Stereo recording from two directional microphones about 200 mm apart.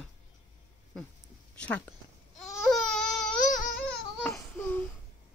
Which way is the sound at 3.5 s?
45° left (ahead or behind).